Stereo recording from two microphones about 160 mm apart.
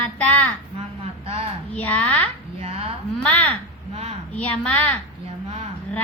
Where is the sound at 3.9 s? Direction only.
40° right (ahead or behind).